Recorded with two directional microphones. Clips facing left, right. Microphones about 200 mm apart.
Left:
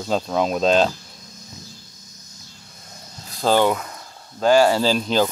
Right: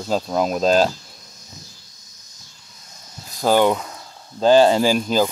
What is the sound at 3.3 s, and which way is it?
Speech, 10° right (ahead or behind).